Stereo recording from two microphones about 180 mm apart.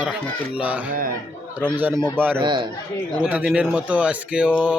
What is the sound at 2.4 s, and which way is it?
Speech, 25° right (ahead or behind).